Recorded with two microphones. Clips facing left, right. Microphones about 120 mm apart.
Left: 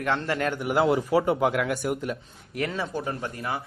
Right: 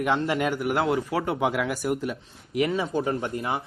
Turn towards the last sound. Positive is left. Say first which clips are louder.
# right 3 dB
turn(degrees=-20)  # may be behind; listen again after turning